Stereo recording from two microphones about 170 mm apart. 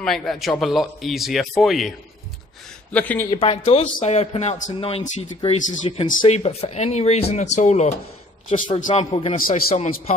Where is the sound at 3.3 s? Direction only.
35° left (ahead or behind).